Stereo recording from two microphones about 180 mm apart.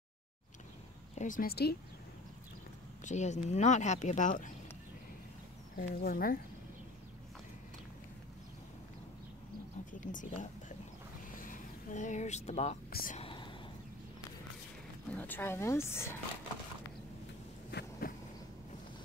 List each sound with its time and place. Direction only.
1.1 s speech: 45° left (ahead or behind); by 1.8 s 60° left (ahead or behind)
3.0 s speech: 40° left (ahead or behind)
5.8 s speech: 55° left (ahead or behind)
9.9 s speech: 45° left (ahead or behind)
12.9 s speech: 50° left (ahead or behind)
13.2 s whispering: 30° left (ahead or behind)
15.0 s speech: 10° left (ahead or behind)
17.6 s a sound: 65° left (ahead or behind)